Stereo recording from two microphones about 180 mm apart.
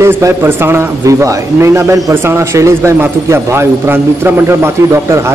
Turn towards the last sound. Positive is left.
turn(degrees=-15)  # may be behind; listen again after turning